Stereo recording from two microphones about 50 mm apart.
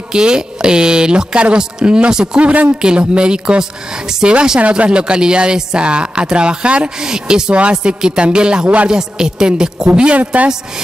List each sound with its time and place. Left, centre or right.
0.1 s speech: centre
8.9 s speech: centre
10.1 s speech: right